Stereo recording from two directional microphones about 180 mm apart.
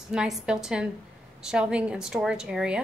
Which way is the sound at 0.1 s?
5° right (ahead or behind).